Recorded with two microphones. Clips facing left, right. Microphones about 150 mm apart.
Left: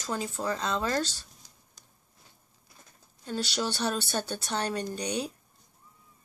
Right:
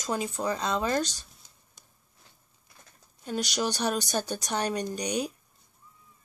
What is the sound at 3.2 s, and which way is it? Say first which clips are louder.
A woman's voice: right 2 dB; 15° right (ahead or behind).